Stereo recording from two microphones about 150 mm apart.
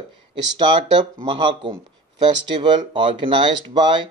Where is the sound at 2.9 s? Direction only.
35° right (ahead or behind).